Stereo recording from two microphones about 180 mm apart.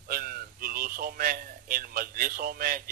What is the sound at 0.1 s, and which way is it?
A man's voice, 55° right (ahead or behind).